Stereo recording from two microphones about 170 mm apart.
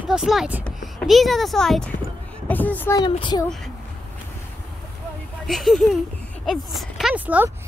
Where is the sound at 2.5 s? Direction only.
10° left (ahead or behind).